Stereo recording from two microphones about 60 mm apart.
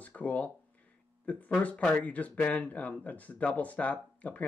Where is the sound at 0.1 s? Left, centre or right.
Left.